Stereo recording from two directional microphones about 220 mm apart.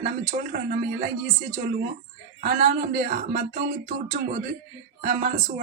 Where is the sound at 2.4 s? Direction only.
40° right (ahead or behind).